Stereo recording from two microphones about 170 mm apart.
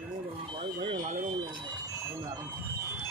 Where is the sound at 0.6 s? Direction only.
35° right (ahead or behind).